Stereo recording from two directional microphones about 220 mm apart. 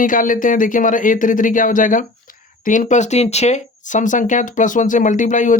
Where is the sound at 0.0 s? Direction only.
35° left (ahead or behind).